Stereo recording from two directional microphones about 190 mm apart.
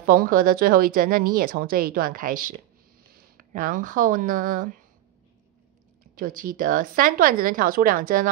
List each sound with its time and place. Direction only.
0.0 s a woman's voice: 50° right (ahead or behind)
6.1 s a woman's voice: 45° right (ahead or behind)